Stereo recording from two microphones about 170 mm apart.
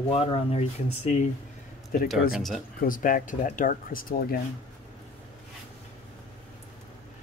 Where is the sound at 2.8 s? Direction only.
55° left (ahead or behind).